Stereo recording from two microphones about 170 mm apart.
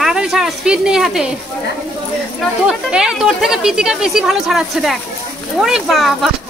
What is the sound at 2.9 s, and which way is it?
Speech, 5° right (ahead or behind).